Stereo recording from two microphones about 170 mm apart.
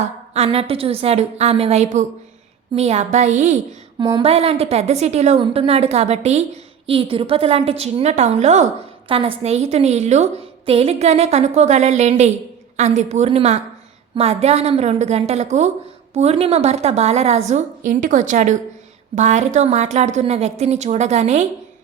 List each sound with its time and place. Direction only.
0.3 s a woman's voice: 35° right (ahead or behind)
9.0 s a woman's voice: 30° right (ahead or behind)